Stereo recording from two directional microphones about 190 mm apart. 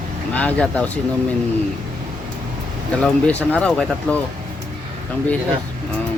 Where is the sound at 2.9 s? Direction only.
5° left (ahead or behind).